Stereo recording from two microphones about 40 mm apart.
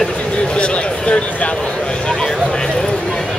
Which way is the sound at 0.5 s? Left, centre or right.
Left.